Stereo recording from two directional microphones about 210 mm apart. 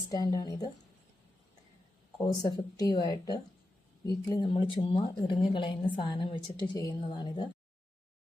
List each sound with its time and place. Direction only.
0.1 s a woman's voice: 15° left (ahead or behind)
2.1 s a woman's voice: 20° left (ahead or behind)